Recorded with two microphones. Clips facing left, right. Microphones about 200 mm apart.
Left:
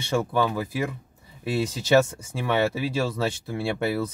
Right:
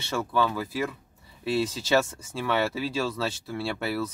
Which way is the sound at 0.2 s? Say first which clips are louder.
Left 2 dB; 15° left (ahead or behind).